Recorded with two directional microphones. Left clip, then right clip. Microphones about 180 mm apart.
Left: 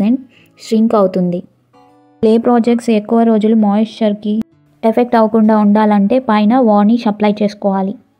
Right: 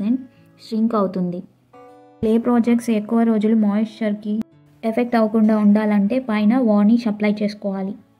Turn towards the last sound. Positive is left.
turn(degrees=20)  # may be behind; listen again after turning